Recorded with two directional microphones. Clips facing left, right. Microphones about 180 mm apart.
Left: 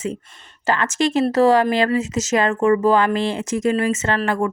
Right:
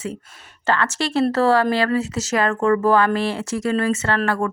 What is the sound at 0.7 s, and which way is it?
Speech, 20° left (ahead or behind).